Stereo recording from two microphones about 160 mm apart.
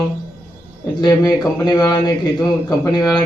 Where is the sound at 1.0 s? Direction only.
25° left (ahead or behind).